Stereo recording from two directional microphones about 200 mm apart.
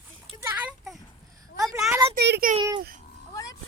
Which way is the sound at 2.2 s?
50° right (ahead or behind).